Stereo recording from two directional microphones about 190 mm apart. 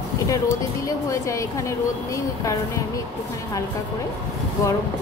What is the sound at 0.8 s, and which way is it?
A woman's voice, 15° left (ahead or behind).